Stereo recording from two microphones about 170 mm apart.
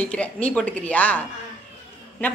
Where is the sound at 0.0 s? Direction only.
10° left (ahead or behind).